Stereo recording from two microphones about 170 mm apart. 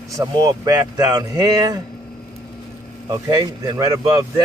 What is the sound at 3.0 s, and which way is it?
Speech, 25° right (ahead or behind).